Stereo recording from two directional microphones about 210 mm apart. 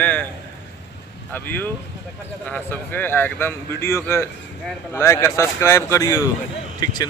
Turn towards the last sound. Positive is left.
turn(degrees=20)  # may be behind; listen again after turning